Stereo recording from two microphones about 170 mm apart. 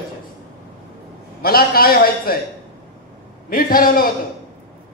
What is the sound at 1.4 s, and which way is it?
Speech, 60° left (ahead or behind).